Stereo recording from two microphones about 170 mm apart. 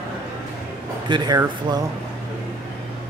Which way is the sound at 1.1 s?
25° right (ahead or behind).